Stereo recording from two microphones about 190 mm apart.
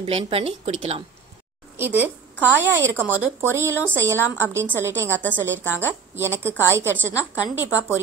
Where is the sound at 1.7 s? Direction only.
10° right (ahead or behind).